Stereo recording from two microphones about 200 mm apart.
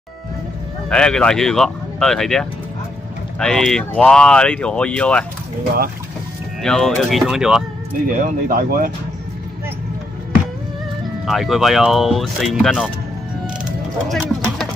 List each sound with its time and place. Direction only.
0.8 s speech: 5° left (ahead or behind)
6.6 s speech: centre (ahead or behind)
8.2 s speech: 45° right (ahead or behind)
11.2 s speech: centre (ahead or behind)
14.0 s a sound: centre (ahead or behind)